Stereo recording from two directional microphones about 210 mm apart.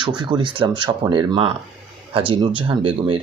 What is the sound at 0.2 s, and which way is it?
Speech, 20° right (ahead or behind).